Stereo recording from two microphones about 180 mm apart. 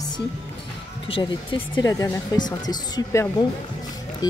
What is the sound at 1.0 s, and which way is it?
Speech, 30° left (ahead or behind).